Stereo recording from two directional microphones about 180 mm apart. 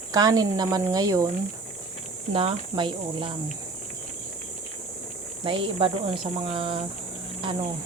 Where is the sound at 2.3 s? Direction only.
30° right (ahead or behind).